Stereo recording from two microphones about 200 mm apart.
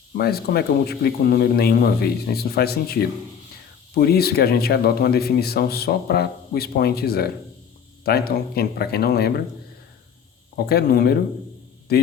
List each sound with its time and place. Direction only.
0.1 s speech: 50° left (ahead or behind)
10.7 s speech: 50° left (ahead or behind)